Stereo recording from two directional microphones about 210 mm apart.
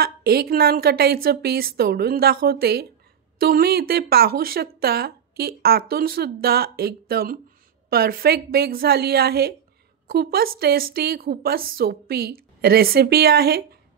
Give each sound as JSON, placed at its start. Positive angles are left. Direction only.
{"t": 0.0, "sound": "speech", "side_deg": -50}